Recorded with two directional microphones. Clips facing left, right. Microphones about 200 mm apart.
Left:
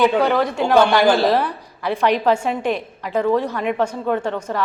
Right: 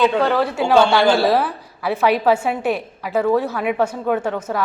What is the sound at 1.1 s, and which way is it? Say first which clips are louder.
A woman's voice: even; 5° right (ahead or behind).